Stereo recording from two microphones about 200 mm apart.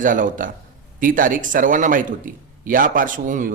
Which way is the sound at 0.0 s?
40° right (ahead or behind).